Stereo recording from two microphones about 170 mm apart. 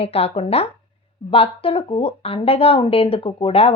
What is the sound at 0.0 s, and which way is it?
Speech, 35° left (ahead or behind).